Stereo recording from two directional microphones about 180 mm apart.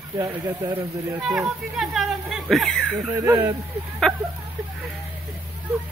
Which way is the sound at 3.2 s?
10° right (ahead or behind).